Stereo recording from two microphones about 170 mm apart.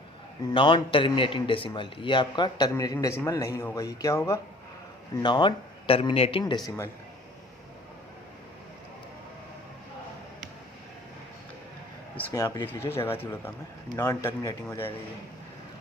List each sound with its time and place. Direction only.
0.5 s a man's voice: 30° left (ahead or behind)
5.2 s speech: 30° left (ahead or behind)
6.7 s speech: 15° left (ahead or behind)
12.3 s a man's voice: 20° left (ahead or behind)